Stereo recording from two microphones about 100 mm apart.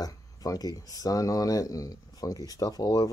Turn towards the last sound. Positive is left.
turn(degrees=40)  # may be behind; listen again after turning